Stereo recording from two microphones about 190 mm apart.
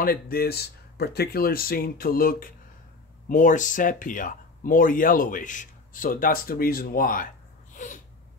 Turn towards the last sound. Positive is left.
turn(degrees=40)  # may be behind; listen again after turning